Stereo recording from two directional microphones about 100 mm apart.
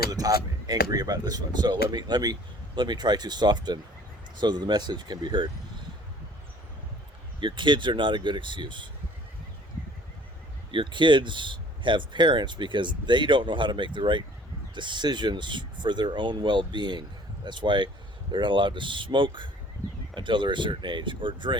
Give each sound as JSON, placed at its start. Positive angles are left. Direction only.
{"t": 0.1, "sound": "speech", "side_deg": -40}
{"t": 7.4, "sound": "speech", "side_deg": -55}
{"t": 10.7, "sound": "speech", "side_deg": -55}